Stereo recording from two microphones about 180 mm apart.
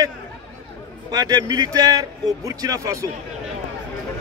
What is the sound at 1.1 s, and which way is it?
A man's voice, 20° right (ahead or behind).